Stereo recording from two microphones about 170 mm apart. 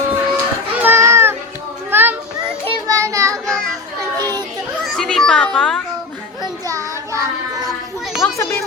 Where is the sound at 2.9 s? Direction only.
20° right (ahead or behind).